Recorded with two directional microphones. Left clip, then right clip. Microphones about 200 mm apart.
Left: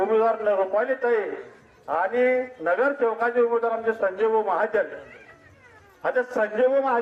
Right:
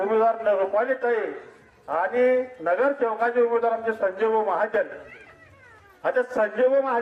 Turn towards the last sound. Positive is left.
turn(degrees=25)  # may be behind; listen again after turning